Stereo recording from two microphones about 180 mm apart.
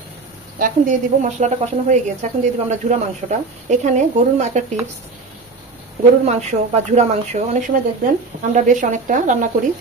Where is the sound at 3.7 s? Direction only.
40° right (ahead or behind).